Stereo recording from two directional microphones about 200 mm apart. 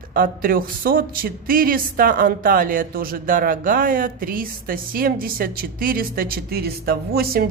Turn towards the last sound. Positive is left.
turn(degrees=-50)  # may be behind; listen again after turning